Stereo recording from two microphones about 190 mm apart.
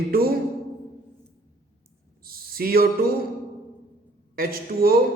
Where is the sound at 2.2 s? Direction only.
50° right (ahead or behind).